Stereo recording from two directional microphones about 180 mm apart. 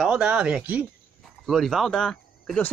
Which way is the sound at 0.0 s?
5° right (ahead or behind).